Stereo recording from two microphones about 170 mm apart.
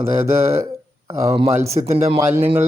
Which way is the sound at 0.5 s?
20° right (ahead or behind).